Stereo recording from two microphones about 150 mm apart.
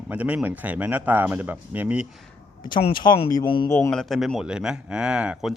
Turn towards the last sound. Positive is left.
turn(degrees=-5)  # may be behind; listen again after turning